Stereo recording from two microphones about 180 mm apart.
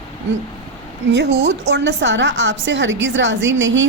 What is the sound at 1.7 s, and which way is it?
A woman's voice, 80° right.